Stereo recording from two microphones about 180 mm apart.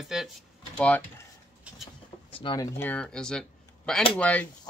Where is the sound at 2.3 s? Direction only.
30° left (ahead or behind).